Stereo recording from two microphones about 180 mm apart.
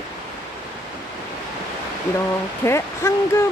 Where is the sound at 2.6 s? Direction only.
15° left (ahead or behind).